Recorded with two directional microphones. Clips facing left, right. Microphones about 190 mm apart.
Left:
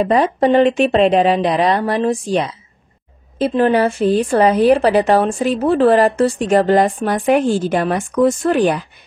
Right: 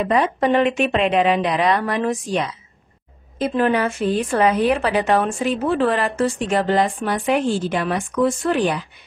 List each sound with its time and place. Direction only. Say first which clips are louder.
0.0 s a woman's voice: left 4 dB; 35° left (ahead or behind)